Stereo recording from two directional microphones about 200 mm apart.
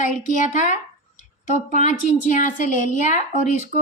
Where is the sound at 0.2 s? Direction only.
40° left (ahead or behind).